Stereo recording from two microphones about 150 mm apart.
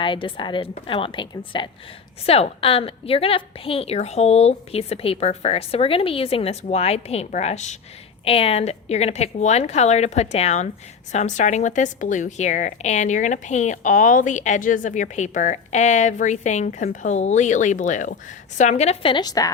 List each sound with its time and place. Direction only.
0.0 s a woman's voice: 35° left (ahead or behind)
19.1 s speech: 25° left (ahead or behind)